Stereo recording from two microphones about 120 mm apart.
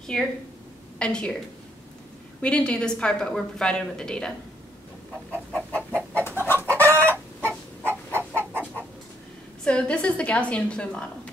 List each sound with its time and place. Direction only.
0.1 s a woman's voice: 5° left (ahead or behind)
2.4 s a woman's voice: 10° left (ahead or behind)
5.3 s chicken: 10° left (ahead or behind)
6.7 s chicken: 20° right (ahead or behind)
9.7 s a woman's voice: 10° left (ahead or behind)